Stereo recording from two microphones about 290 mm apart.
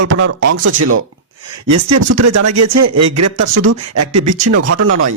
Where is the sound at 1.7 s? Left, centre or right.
Right.